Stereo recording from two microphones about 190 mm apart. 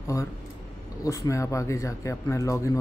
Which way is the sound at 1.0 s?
15° left (ahead or behind).